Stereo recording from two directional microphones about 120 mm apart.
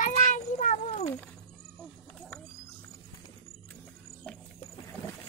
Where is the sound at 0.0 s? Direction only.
90° left.